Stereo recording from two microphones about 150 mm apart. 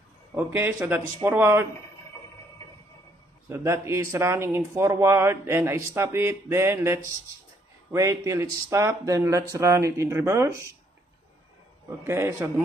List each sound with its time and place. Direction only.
0.3 s speech: 15° right (ahead or behind)
3.4 s speech: 15° right (ahead or behind)
12.0 s speech: 15° right (ahead or behind)